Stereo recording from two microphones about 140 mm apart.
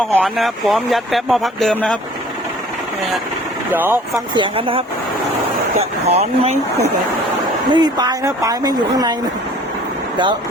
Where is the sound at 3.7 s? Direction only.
15° right (ahead or behind).